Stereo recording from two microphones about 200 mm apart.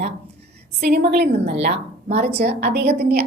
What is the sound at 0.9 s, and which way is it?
A woman's voice, 50° right (ahead or behind).